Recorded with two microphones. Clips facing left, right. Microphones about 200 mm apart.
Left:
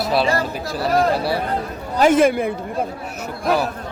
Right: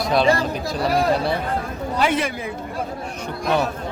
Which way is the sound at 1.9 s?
45° left (ahead or behind).